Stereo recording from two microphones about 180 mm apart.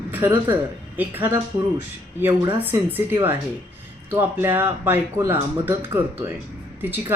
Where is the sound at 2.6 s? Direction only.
10° right (ahead or behind).